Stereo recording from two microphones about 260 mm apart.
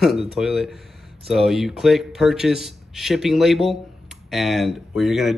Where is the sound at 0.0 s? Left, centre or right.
Centre.